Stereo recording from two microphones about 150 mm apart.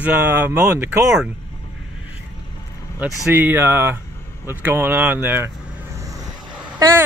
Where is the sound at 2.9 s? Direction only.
15° right (ahead or behind).